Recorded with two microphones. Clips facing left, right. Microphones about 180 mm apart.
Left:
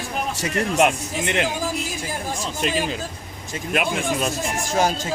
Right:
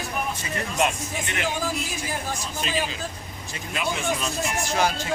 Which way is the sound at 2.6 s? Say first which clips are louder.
Left 5 dB; 55° left (ahead or behind).